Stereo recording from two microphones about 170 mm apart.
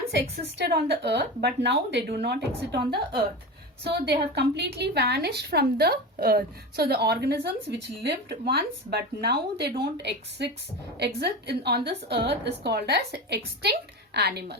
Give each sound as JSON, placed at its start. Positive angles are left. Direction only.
{"t": 0.7, "sound": "speech", "side_deg": -80}
{"t": 2.8, "sound": "a woman's voice", "side_deg": -30}
{"t": 3.8, "sound": "a woman's voice", "side_deg": -75}
{"t": 11.0, "sound": "a woman's voice", "side_deg": -75}